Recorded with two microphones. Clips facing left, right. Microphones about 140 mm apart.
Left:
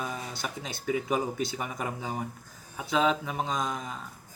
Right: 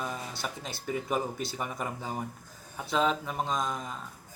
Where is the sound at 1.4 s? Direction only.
5° left (ahead or behind).